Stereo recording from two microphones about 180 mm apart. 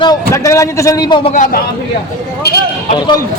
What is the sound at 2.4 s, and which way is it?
Speech, 65° left (ahead or behind).